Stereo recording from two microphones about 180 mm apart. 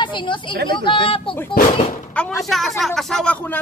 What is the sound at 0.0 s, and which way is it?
Speech, 25° left (ahead or behind).